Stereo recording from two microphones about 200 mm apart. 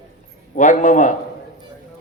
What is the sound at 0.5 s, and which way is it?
Speech, 40° left (ahead or behind).